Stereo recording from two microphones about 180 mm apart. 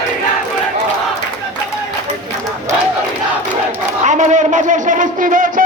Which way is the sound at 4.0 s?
40° right (ahead or behind).